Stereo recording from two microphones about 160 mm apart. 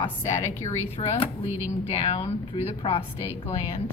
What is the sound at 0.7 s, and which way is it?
Speech, 40° left (ahead or behind).